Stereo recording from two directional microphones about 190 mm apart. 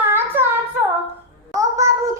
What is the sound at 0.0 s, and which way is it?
Child singing, 10° right (ahead or behind).